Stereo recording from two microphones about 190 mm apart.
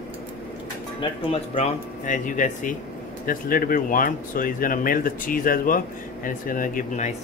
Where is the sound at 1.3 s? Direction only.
40° left (ahead or behind).